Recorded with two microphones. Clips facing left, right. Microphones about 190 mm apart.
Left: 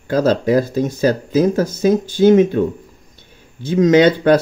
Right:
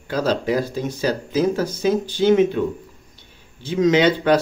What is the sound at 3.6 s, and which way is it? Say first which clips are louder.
Speech: left 5 dB; 45° left (ahead or behind).